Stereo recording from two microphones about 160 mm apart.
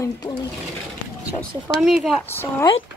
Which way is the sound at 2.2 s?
15° left (ahead or behind).